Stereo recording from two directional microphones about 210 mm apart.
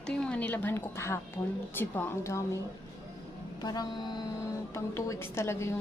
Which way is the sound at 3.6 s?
20° left (ahead or behind).